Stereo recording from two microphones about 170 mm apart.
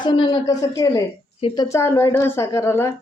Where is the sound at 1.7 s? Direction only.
15° left (ahead or behind).